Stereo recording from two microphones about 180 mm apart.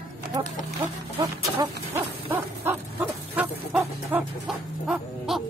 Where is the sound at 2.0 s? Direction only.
10° right (ahead or behind).